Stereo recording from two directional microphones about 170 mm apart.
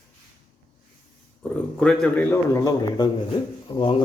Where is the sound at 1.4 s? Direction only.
Centre (ahead or behind).